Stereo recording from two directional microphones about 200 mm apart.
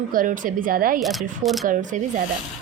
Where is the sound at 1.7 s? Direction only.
40° right (ahead or behind).